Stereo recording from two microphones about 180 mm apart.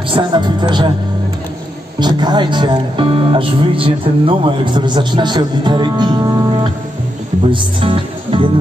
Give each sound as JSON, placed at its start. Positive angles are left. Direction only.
{"t": 0.1, "sound": "speech", "side_deg": -25}
{"t": 2.0, "sound": "speech", "side_deg": -25}